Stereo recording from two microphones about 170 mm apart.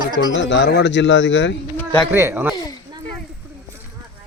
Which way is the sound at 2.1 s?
15° right (ahead or behind).